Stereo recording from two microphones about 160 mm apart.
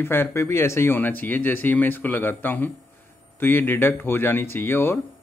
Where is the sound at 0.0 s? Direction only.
15° left (ahead or behind).